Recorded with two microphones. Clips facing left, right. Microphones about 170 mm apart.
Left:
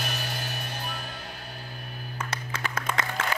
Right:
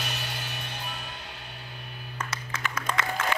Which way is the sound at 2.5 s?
30° left (ahead or behind).